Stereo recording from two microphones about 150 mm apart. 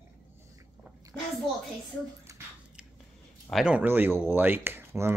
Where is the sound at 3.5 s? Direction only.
5° right (ahead or behind).